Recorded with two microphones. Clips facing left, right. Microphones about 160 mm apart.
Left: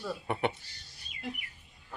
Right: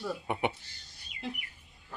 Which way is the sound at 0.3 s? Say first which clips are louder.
Left 2 dB; 15° right (ahead or behind).